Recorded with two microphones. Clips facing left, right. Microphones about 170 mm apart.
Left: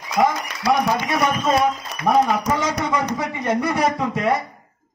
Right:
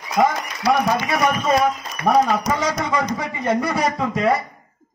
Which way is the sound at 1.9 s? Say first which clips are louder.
Left 1 dB; 70° left (ahead or behind).